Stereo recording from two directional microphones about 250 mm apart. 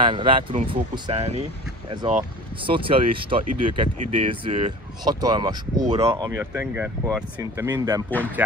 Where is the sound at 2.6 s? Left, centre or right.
Right.